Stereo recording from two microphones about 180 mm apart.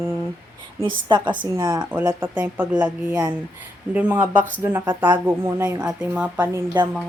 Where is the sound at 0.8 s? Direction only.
25° right (ahead or behind); by 6.3 s 5° right (ahead or behind).